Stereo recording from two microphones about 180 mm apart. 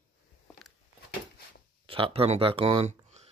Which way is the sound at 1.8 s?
30° right (ahead or behind).